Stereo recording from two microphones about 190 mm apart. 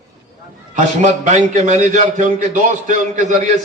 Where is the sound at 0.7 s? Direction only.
40° right (ahead or behind).